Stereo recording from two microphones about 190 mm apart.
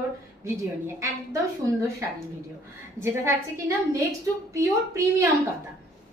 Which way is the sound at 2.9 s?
15° right (ahead or behind).